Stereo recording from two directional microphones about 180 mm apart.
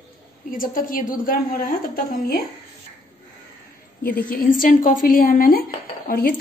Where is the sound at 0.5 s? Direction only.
50° left (ahead or behind).